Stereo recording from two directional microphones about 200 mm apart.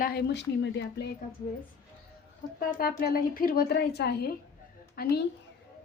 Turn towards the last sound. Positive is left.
turn(degrees=55)  # may be behind; listen again after turning